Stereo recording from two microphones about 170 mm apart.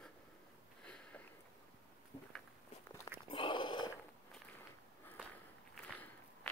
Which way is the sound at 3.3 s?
30° left (ahead or behind).